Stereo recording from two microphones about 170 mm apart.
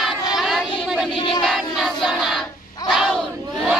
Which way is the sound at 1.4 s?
Centre (ahead or behind).